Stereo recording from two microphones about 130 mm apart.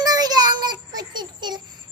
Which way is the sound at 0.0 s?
30° right (ahead or behind).